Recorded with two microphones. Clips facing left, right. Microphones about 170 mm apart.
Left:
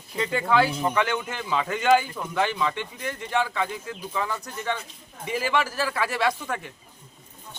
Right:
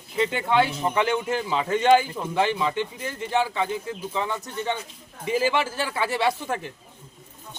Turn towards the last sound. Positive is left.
turn(degrees=-30)  # may be behind; listen again after turning